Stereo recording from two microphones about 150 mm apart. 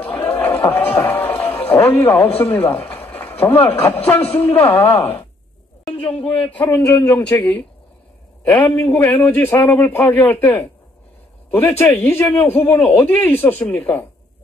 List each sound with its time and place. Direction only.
0.0 s a sound: 15° left (ahead or behind)
2.3 s speech: 15° left (ahead or behind)
5.9 s a sound: 10° left (ahead or behind)
6.2 s a man's voice: 35° left (ahead or behind)
6.7 s speech: 25° left (ahead or behind)
8.5 s speech: 10° left (ahead or behind)
11.8 s speech: 15° left (ahead or behind)